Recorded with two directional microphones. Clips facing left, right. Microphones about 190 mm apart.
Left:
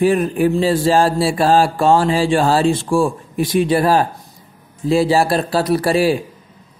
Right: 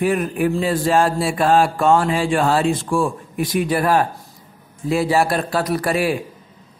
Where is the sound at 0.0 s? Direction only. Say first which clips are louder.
Left 4 dB; 30° left (ahead or behind).